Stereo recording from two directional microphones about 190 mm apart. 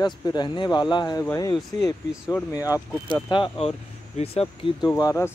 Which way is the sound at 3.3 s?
30° left (ahead or behind).